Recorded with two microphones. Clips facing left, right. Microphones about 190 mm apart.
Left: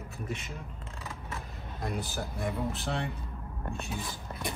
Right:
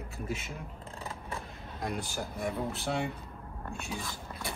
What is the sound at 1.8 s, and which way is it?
Speech, centre (ahead or behind).